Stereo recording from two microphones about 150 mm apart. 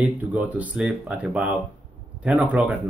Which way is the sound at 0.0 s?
10° right (ahead or behind).